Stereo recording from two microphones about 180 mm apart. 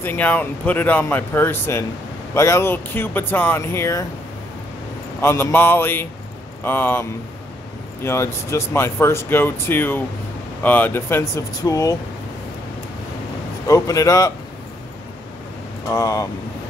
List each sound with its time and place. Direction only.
0.0 s speech: 10° left (ahead or behind)
5.2 s speech: 15° left (ahead or behind)
13.7 s a man's voice: 20° left (ahead or behind)
15.9 s a man's voice: 20° left (ahead or behind)